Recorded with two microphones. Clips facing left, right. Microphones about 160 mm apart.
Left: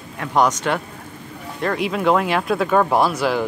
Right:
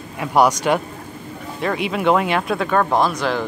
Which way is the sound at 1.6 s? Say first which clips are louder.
Even; centre (ahead or behind).